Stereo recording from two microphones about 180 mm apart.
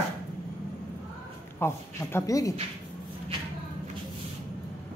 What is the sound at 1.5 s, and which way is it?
A man's voice, 15° left (ahead or behind).